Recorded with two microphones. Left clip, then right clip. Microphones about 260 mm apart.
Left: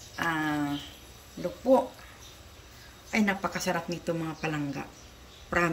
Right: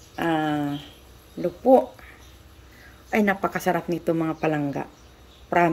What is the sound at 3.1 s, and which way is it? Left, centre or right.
A woman's voice, centre.